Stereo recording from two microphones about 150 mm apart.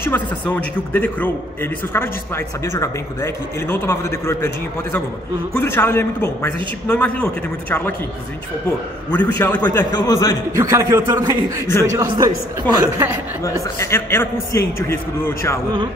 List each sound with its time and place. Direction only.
0.0 s a man's voice: 10° left (ahead or behind)
5.6 s a man's voice: 15° left (ahead or behind)
9.1 s a man's voice: 10° left (ahead or behind)
9.9 s a man's voice: 25° left (ahead or behind)
10.5 s a man's voice: 20° right (ahead or behind)
13.7 s a man's voice: 15° left (ahead or behind)